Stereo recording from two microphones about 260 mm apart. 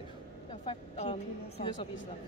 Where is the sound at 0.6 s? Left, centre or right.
Left.